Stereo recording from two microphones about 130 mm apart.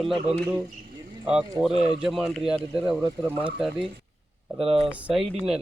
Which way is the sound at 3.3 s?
10° right (ahead or behind).